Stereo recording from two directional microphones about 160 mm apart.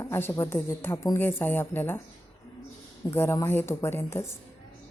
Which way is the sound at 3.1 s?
15° left (ahead or behind).